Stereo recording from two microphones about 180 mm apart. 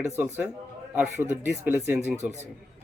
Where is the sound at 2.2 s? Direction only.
40° right (ahead or behind).